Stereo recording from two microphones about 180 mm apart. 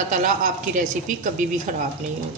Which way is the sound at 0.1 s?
45° right (ahead or behind).